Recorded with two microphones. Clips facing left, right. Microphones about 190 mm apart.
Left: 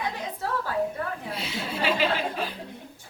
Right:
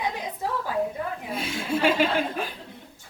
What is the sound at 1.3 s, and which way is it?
A woman's voice, 50° right (ahead or behind).